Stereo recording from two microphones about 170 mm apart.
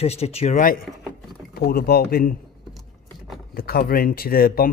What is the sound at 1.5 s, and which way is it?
Speech, 65° left (ahead or behind).